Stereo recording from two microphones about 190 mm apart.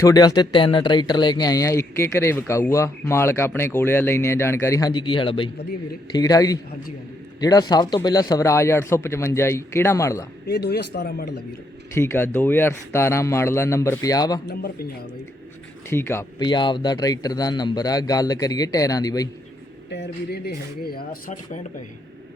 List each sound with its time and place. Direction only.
0.0 s a man's voice: 20° left (ahead or behind)
10.4 s speech: 60° left (ahead or behind)
11.9 s speech: 10° left (ahead or behind)
14.4 s speech: 60° left (ahead or behind)
15.9 s speech: 10° left (ahead or behind)
16.4 s a man's voice: 25° left (ahead or behind)
19.9 s speech: 60° left (ahead or behind)
20.8 s speech: 50° left (ahead or behind)